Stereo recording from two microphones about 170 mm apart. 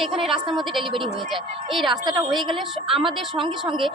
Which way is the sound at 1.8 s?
25° right (ahead or behind).